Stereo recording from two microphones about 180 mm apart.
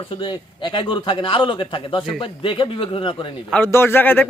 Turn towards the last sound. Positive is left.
turn(degrees=10)  # may be behind; listen again after turning